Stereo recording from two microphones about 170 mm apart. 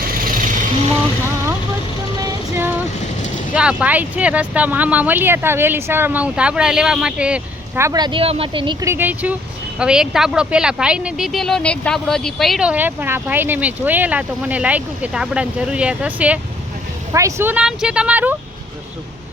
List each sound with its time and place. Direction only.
2.1 s music: 20° right (ahead or behind)
3.5 s speech: 5° right (ahead or behind)
7.9 s speech: 25° right (ahead or behind)
8.9 s speech: 10° right (ahead or behind)